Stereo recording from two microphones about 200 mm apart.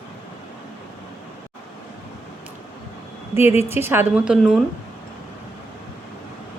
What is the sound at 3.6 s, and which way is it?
Speech, 10° right (ahead or behind).